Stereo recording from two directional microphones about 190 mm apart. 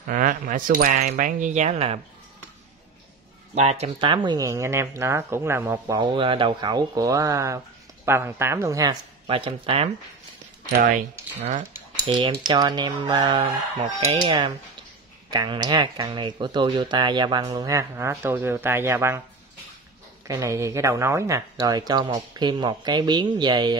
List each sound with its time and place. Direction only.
0.0 s speech: 50° right (ahead or behind)
3.5 s speech: 35° right (ahead or behind); by 5.9 s 10° right (ahead or behind)
5.9 s speech: 25° right (ahead or behind)
10.7 s speech: 45° right (ahead or behind)
11.7 s speech: 25° right (ahead or behind)
20.2 s speech: 15° right (ahead or behind)